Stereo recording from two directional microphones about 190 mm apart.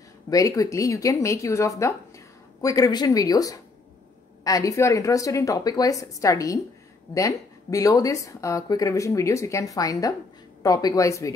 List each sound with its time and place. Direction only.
0.3 s speech: 20° left (ahead or behind)